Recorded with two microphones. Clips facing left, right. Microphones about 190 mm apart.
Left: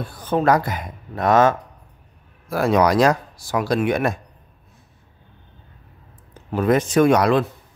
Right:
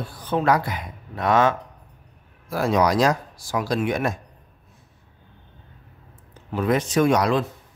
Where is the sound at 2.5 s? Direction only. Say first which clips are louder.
Left 3 dB; 60° left (ahead or behind).